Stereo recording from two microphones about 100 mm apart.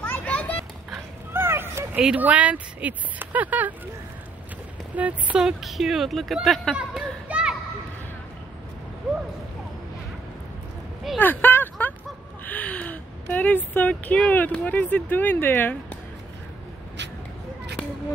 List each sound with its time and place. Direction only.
0.0 s children playing: 15° left (ahead or behind)
1.3 s a sound: 25° right (ahead or behind)
2.0 s speech: 15° right (ahead or behind)
4.9 s speech: 15° right (ahead or behind); by 6.7 s centre (ahead or behind)
6.7 s children playing: 10° right (ahead or behind)
11.1 s a sound: 20° left (ahead or behind)
12.4 s speech: 15° left (ahead or behind)